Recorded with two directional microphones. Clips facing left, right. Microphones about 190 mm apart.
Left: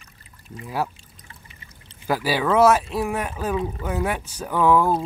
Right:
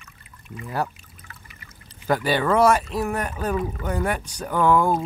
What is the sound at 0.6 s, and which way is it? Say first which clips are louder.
Speech: even; centre (ahead or behind).